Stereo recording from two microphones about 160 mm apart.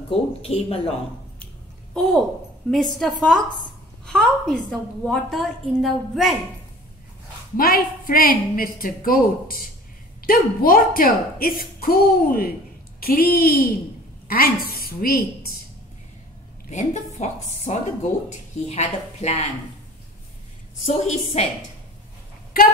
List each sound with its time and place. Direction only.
0.4 s speech: 40° left (ahead or behind)
2.0 s a woman's voice: centre (ahead or behind)
7.5 s a woman's voice: 65° left (ahead or behind)
16.7 s a woman's voice: 45° left (ahead or behind)
20.8 s speech: 40° left (ahead or behind)